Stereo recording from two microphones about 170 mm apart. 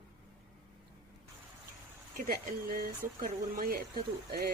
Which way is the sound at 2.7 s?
55° right (ahead or behind).